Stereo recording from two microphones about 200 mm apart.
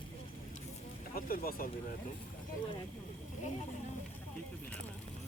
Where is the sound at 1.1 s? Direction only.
50° left (ahead or behind).